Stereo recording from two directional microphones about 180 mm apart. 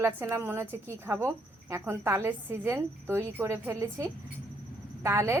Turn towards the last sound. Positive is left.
turn(degrees=-15)  # may be behind; listen again after turning